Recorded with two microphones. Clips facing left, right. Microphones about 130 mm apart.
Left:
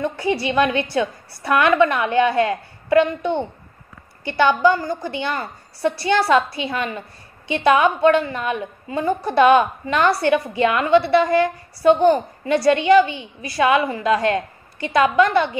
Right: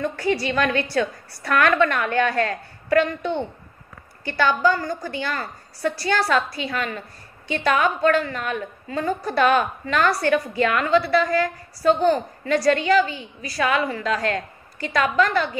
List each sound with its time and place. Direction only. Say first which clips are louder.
0.0 s a woman's voice: left 1 dB; 15° left (ahead or behind)
4.2 s a woman's voice: left 4 dB; 20° left (ahead or behind)
12.5 s a woman's voice: left 4 dB; 25° left (ahead or behind)
13.1 s a woman's voice: left 2 dB; 35° right (ahead or behind)
13.6 s a woman's voice: left 5 dB; 25° left (ahead or behind)